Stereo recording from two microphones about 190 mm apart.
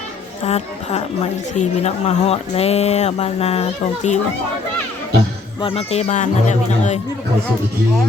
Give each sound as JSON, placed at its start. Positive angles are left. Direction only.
{"t": 0.4, "sound": "a woman's voice", "side_deg": 35}
{"t": 5.5, "sound": "a woman's voice", "side_deg": 30}